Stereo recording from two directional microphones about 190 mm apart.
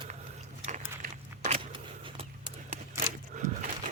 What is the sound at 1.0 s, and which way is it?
Biting, 40° right (ahead or behind).